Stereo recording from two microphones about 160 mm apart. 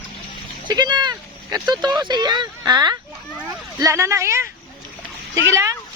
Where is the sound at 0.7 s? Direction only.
25° right (ahead or behind).